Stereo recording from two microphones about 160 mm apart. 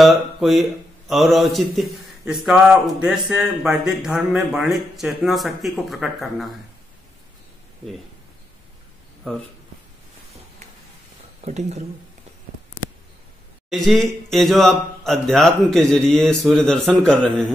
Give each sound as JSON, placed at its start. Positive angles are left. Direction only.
{"t": 0.0, "sound": "speech", "side_deg": 0}
{"t": 9.2, "sound": "speech", "side_deg": 0}
{"t": 11.4, "sound": "speech", "side_deg": -45}
{"t": 13.7, "sound": "speech", "side_deg": 0}